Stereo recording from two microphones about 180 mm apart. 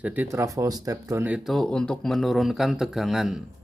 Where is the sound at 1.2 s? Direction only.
5° right (ahead or behind).